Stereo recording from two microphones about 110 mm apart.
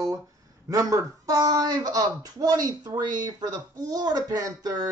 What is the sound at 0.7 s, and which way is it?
Speech, 30° right (ahead or behind).